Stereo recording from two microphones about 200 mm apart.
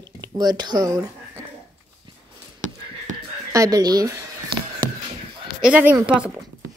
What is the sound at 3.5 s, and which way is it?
Speech, 15° right (ahead or behind).